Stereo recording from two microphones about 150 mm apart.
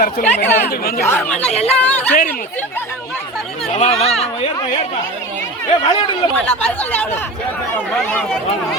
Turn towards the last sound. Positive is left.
turn(degrees=10)  # may be behind; listen again after turning